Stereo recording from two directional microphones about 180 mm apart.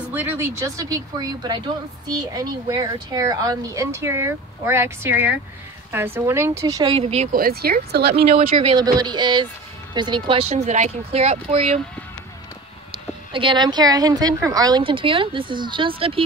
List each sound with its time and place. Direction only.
0.1 s speech: 15° right (ahead or behind); by 7.2 s 35° right (ahead or behind)
7.3 s speech: 55° right (ahead or behind)
8.3 s speech: 35° right (ahead or behind)
8.7 s a woman's voice: 25° right (ahead or behind)
13.3 s a woman's voice: 30° right (ahead or behind)